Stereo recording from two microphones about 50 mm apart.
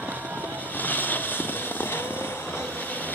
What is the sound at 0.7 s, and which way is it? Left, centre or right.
Vehicle, left.